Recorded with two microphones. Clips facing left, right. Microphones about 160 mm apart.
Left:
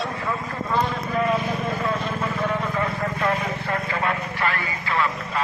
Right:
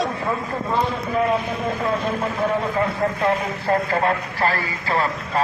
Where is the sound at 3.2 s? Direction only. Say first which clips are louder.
Right 1 dB; 35° right (ahead or behind).